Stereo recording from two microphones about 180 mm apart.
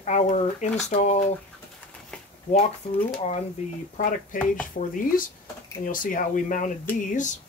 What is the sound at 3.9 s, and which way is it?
Speech, 45° left (ahead or behind).